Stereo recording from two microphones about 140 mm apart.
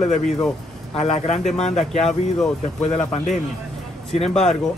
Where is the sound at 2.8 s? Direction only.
50° left (ahead or behind).